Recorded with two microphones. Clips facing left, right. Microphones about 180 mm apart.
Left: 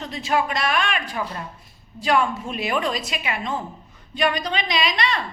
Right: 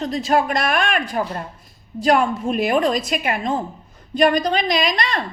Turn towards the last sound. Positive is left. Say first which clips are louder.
# right 3 dB
turn(degrees=-45)  # may be behind; listen again after turning